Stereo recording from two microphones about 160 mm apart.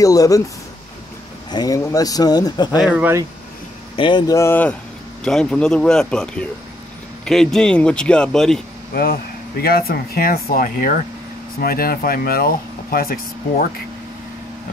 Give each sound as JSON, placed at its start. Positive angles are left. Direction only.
{"t": 0.0, "sound": "speech", "side_deg": 20}
{"t": 1.5, "sound": "speech", "side_deg": 25}
{"t": 2.8, "sound": "speech", "side_deg": -10}
{"t": 3.9, "sound": "speech", "side_deg": 30}
{"t": 8.9, "sound": "speech", "side_deg": 75}